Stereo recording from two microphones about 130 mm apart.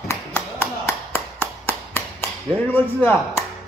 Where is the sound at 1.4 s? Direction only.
15° left (ahead or behind).